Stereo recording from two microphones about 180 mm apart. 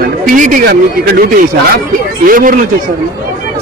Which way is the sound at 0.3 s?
50° right (ahead or behind).